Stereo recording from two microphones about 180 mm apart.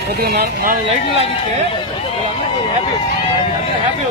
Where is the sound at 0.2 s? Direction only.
60° right (ahead or behind).